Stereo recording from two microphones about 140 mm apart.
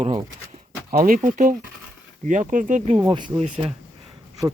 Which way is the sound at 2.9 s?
35° right (ahead or behind).